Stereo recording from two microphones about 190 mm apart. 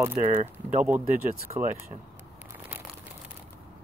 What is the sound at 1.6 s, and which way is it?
Speech, 10° right (ahead or behind).